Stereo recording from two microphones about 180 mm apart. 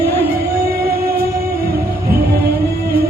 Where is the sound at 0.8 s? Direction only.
55° right (ahead or behind).